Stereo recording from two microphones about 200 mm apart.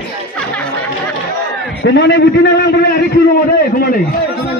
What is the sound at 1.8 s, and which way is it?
A man's voice, 60° left (ahead or behind).